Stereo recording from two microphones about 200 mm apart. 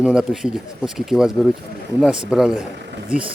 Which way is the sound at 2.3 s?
Centre (ahead or behind).